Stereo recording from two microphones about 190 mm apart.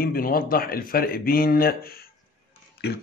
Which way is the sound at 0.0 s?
50° left (ahead or behind).